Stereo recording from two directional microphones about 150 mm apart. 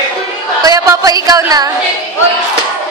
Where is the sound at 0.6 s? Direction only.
25° right (ahead or behind).